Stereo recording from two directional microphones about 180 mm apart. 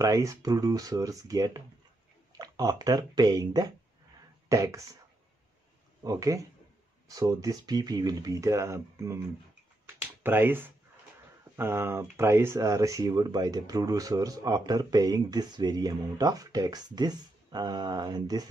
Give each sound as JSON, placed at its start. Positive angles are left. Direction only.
{"t": 0.0, "sound": "speech", "side_deg": -15}
{"t": 6.0, "sound": "speech", "side_deg": -20}
{"t": 10.2, "sound": "speech", "side_deg": -10}